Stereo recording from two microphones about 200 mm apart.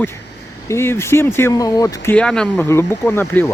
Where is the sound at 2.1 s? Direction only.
5° left (ahead or behind).